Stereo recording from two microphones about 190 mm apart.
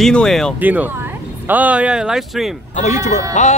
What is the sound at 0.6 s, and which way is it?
Speech, 10° right (ahead or behind).